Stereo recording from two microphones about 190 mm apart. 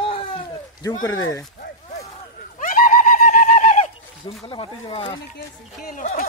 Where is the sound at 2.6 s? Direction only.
45° left (ahead or behind).